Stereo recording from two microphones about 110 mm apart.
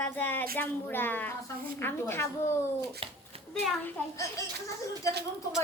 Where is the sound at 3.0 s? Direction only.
65° right (ahead or behind).